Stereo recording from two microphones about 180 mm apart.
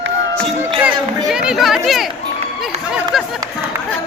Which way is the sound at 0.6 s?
5° right (ahead or behind).